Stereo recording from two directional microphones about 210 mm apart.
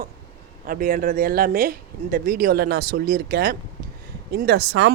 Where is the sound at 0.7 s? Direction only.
40° right (ahead or behind).